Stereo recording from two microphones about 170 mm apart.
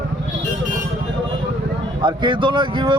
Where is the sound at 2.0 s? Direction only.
25° right (ahead or behind).